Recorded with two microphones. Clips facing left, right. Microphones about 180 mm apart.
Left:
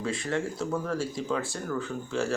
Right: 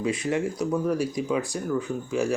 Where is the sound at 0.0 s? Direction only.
20° right (ahead or behind).